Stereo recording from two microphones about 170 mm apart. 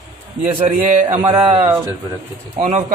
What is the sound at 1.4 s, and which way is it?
Speech, 30° right (ahead or behind).